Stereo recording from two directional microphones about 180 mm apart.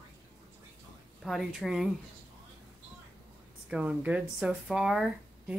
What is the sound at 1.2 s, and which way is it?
Speech, centre (ahead or behind).